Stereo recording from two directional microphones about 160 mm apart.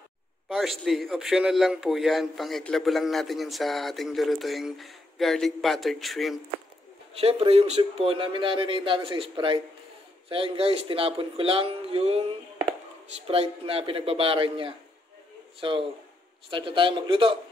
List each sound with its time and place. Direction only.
0.5 s a man's voice: centre (ahead or behind)
7.2 s a man's voice: 40° right (ahead or behind)
13.3 s a man's voice: 35° right (ahead or behind)